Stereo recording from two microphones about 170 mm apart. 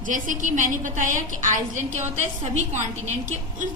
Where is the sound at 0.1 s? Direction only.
50° right (ahead or behind).